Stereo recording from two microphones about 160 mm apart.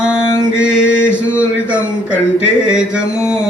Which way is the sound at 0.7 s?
5° right (ahead or behind).